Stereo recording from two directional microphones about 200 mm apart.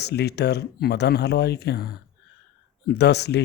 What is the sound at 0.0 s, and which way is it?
Speech, 55° left (ahead or behind).